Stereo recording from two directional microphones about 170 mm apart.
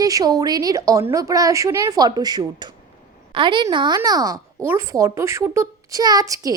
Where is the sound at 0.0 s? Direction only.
20° right (ahead or behind).